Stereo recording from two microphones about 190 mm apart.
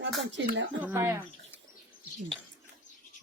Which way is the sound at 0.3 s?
80° right.